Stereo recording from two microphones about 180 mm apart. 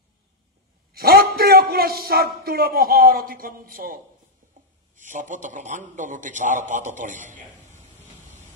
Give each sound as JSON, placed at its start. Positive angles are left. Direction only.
{"t": 0.9, "sound": "a man's voice", "side_deg": -60}